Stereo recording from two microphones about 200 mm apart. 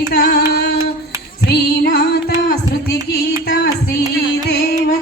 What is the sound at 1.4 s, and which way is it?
Music, 55° left (ahead or behind).